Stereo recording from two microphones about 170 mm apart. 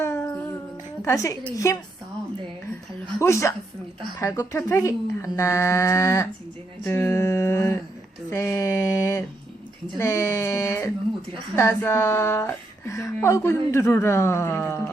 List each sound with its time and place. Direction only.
0.0 s humming: 15° left (ahead or behind)
1.0 s a woman's voice: 20° left (ahead or behind)
3.2 s speech: 15° left (ahead or behind)
8.3 s a sound: 15° left (ahead or behind)
10.0 s speech: 15° left (ahead or behind)